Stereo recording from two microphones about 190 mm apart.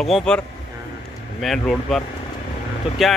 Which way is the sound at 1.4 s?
Centre (ahead or behind).